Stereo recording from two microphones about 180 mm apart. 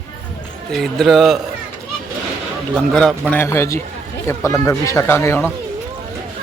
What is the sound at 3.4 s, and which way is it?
Speech, 15° left (ahead or behind).